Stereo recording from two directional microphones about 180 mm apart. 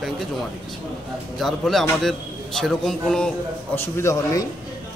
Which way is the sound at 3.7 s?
15° left (ahead or behind).